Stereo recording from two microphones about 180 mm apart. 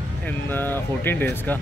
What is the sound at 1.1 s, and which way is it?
Speech, 10° left (ahead or behind).